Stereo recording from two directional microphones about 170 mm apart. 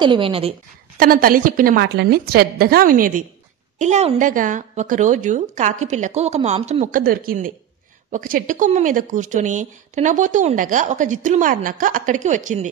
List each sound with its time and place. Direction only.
0.0 s speech: 30° right (ahead or behind)
0.9 s a woman's voice: 60° right (ahead or behind)
1.8 s a woman's voice: 70° right (ahead or behind); by 12.6 s 45° right (ahead or behind)